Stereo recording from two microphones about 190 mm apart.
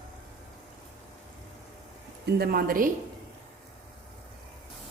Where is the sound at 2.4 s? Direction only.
50° right (ahead or behind).